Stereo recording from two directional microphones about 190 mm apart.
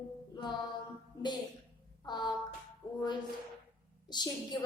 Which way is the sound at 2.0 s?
20° left (ahead or behind).